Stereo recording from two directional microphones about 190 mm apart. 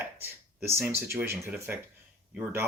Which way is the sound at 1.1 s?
10° right (ahead or behind).